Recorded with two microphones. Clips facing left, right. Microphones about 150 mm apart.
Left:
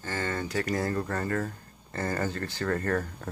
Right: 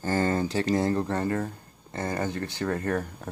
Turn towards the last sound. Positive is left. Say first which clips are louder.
# right 1 dB
turn(degrees=-15)  # may be behind; listen again after turning